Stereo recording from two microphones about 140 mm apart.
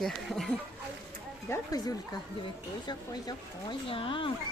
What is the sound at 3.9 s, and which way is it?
Speech, 40° left (ahead or behind).